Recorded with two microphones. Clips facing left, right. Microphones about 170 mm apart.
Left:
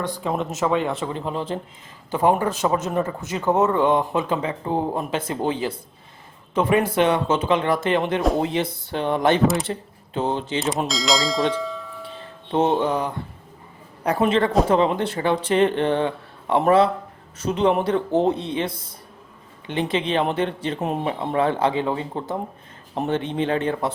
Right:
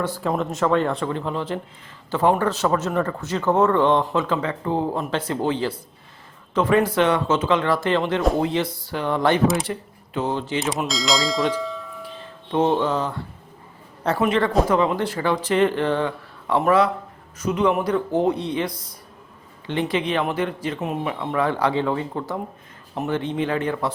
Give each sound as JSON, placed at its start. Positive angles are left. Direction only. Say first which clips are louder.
{"t": 0.2, "sound": "speech", "louder": "right 1 dB", "side_deg": 0}
{"t": 1.1, "sound": "speech", "louder": "right 1 dB", "side_deg": 20}
{"t": 10.8, "sound": "speech", "louder": "even", "side_deg": 0}
{"t": 12.5, "sound": "speech", "louder": "even", "side_deg": 20}
{"t": 14.2, "sound": "speech", "louder": "left 1 dB", "side_deg": 25}